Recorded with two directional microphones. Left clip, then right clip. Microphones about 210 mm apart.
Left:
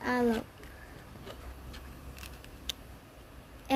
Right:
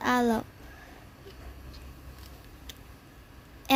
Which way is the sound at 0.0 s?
40° right (ahead or behind).